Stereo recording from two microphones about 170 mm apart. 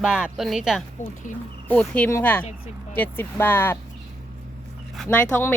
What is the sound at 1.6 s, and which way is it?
Speech, 10° left (ahead or behind).